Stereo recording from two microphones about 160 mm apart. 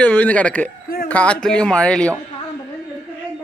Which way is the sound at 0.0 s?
10° left (ahead or behind).